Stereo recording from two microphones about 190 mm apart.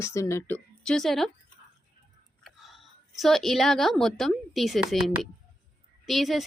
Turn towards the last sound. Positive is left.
turn(degrees=0)  # may be behind; listen again after turning